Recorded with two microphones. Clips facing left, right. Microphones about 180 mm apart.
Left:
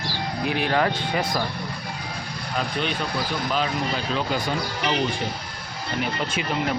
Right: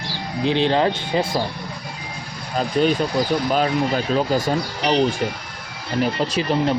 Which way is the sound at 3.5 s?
45° right (ahead or behind).